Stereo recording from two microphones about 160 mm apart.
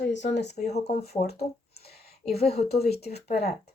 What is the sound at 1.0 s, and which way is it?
Speech, 80° left.